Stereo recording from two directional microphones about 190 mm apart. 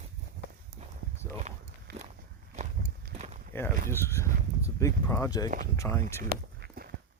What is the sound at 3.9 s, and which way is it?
Speech, 15° left (ahead or behind).